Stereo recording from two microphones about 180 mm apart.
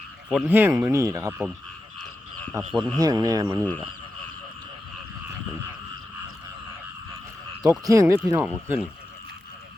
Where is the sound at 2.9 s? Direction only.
20° right (ahead or behind).